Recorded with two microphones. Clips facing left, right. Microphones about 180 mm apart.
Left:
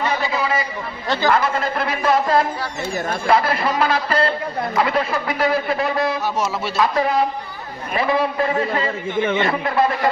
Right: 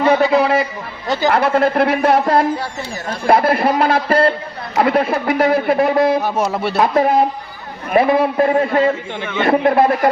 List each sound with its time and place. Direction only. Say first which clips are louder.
0.0 s a sound: right 9 dB; 60° right (ahead or behind)
1.3 s speech: right 7 dB; 60° right (ahead or behind)
7.9 s speech: right 6 dB; 55° right (ahead or behind)